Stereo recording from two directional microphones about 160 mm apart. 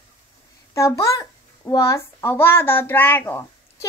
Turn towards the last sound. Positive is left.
turn(degrees=15)  # may be behind; listen again after turning